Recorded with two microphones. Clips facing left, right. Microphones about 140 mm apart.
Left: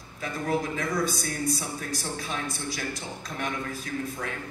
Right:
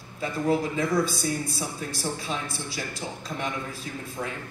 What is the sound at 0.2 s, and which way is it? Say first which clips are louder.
Speech: right 3 dB; 25° right (ahead or behind).